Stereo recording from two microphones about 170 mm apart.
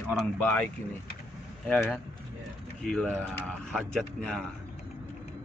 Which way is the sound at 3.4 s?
5° left (ahead or behind).